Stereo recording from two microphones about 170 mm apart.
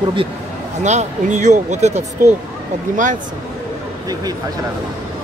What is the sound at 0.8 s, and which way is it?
Speech, 45° right (ahead or behind).